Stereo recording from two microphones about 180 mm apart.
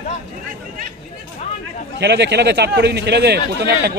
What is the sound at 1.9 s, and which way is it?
A man's voice, 70° right (ahead or behind).